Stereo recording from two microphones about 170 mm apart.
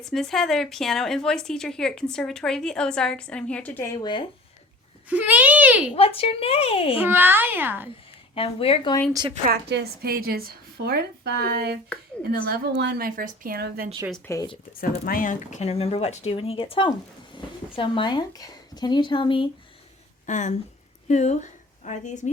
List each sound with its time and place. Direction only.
0.0 s a woman's voice: centre (ahead or behind); by 4.3 s 25° left (ahead or behind)
5.0 s a child's voice: 10° right (ahead or behind)
5.9 s speech: 35° left (ahead or behind)
7.0 s a child's voice: 10° right (ahead or behind)
8.4 s speech: 35° left (ahead or behind)
9.5 s a woman's voice: 75° right (ahead or behind)
14.3 s speech: 15° left (ahead or behind)
15.0 s speech: 55° left (ahead or behind); by 19.5 s 30° left (ahead or behind)
20.2 s a woman's voice: 45° left (ahead or behind)